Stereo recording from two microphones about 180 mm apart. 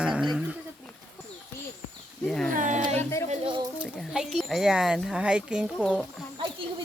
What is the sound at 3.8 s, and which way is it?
Speech, centre (ahead or behind).